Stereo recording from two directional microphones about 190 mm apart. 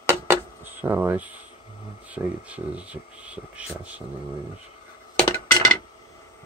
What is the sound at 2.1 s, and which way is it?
Speech, 5° right (ahead or behind).